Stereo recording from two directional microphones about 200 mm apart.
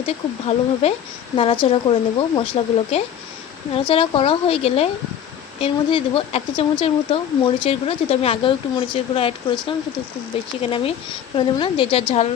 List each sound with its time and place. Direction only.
0.4 s speech: 30° left (ahead or behind)